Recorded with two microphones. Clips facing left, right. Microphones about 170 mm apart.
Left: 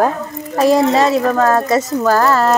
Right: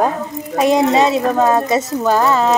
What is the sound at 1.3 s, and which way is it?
Speech, 15° right (ahead or behind).